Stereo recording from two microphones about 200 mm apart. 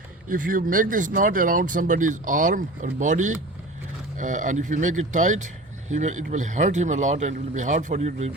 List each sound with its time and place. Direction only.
0.3 s speech: 40° right (ahead or behind)